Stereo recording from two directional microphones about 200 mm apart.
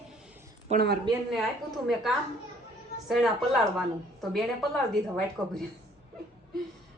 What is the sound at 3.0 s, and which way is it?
Speech, centre (ahead or behind).